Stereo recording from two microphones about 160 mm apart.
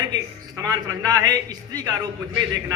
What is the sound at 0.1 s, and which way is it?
A man's voice, 25° right (ahead or behind).